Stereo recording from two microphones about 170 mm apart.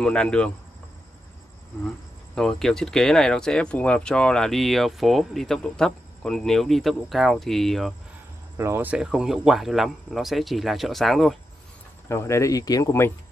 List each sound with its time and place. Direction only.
0.0 s speech: 5° left (ahead or behind)
2.3 s speech: centre (ahead or behind)
8.5 s speech: 15° right (ahead or behind); by 11.3 s centre (ahead or behind)
12.1 s speech: 15° left (ahead or behind)